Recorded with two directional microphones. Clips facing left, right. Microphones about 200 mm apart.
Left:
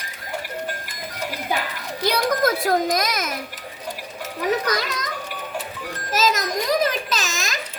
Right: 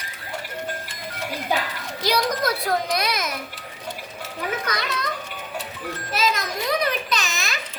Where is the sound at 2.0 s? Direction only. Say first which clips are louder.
Left 3 dB; 50° left (ahead or behind).